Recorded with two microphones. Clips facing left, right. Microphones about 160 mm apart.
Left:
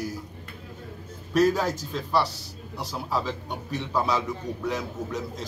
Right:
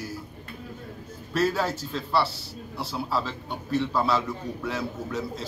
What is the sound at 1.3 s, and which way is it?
Speech, 15° left (ahead or behind).